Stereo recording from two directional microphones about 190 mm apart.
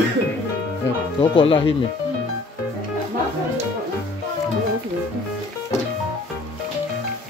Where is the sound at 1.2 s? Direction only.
25° left (ahead or behind).